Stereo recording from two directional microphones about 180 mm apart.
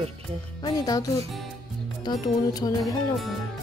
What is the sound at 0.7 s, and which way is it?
Speech, 20° left (ahead or behind).